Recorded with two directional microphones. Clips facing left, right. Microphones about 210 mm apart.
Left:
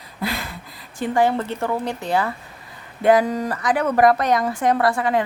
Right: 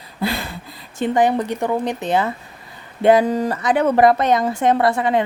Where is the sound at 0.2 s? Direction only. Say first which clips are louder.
Right 4 dB; 30° right (ahead or behind).